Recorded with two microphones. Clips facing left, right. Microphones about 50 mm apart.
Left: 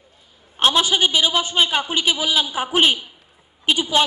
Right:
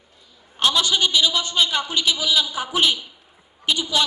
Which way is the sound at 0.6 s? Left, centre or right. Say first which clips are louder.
Left 3 dB; left.